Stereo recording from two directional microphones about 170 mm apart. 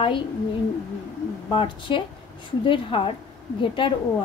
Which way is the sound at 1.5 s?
30° left (ahead or behind).